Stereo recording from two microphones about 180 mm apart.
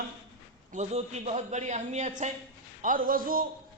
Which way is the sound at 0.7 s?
35° right (ahead or behind).